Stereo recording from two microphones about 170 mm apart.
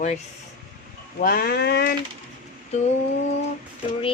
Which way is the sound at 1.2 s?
60° left (ahead or behind).